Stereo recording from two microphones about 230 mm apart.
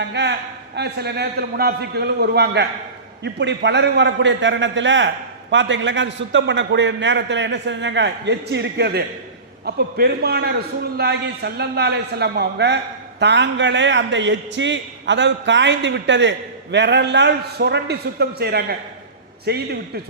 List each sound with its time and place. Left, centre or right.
0.1 s a man's voice: right